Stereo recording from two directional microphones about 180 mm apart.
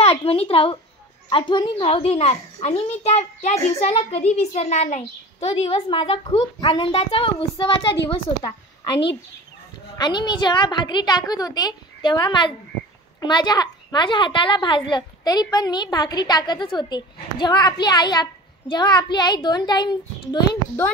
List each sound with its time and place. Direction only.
0.0 s a woman's voice: 35° left (ahead or behind)
9.9 s a child's voice: 25° left (ahead or behind)